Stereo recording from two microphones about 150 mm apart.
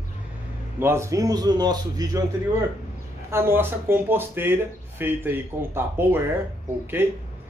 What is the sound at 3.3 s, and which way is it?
Speech, 15° right (ahead or behind).